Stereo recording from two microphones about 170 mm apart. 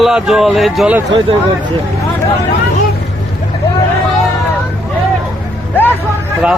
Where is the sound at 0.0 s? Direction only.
Centre (ahead or behind).